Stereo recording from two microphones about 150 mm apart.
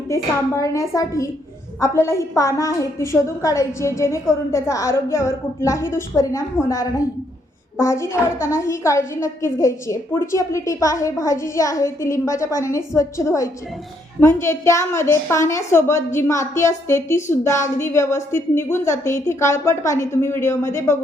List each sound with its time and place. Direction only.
0.1 s a woman's voice: 20° left (ahead or behind)